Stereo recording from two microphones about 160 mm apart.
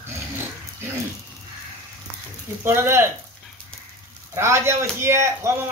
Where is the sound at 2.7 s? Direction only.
15° right (ahead or behind).